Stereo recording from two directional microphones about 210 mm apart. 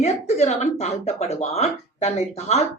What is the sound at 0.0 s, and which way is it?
A woman's voice, 30° left (ahead or behind).